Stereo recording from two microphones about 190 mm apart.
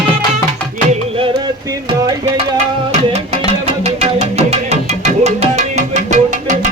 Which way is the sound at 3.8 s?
35° right (ahead or behind).